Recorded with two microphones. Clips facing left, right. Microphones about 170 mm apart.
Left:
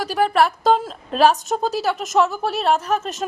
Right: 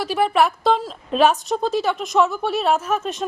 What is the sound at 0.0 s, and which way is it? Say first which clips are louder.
Speech: even; 40° left (ahead or behind).